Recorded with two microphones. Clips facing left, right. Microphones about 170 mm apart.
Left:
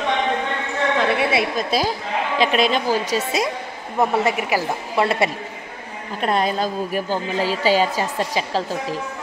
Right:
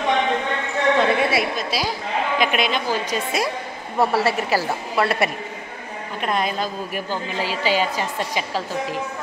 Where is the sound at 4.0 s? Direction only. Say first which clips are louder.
Even; 20° left (ahead or behind).